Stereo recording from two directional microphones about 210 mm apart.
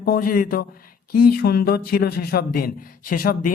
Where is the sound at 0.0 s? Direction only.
45° left (ahead or behind).